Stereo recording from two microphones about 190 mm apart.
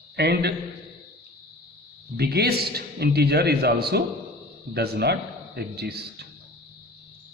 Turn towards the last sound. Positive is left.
turn(degrees=-55)  # may be behind; listen again after turning